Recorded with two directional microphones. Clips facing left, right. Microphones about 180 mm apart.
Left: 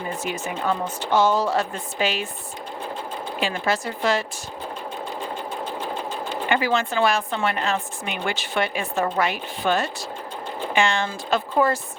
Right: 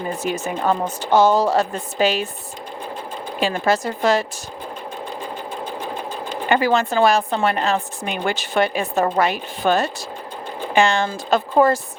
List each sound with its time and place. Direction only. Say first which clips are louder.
0.2 s a woman's voice: right 4 dB; 40° right (ahead or behind)
3.4 s a woman's voice: right 5 dB; 40° right (ahead or behind)
6.5 s a woman's voice: right 5 dB; 40° right (ahead or behind)